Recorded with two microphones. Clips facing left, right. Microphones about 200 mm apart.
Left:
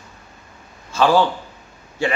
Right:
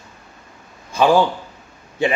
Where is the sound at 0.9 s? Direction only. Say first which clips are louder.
Right 1 dB; 15° right (ahead or behind).